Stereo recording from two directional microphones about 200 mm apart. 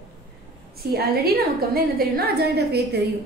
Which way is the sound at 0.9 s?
50° right (ahead or behind).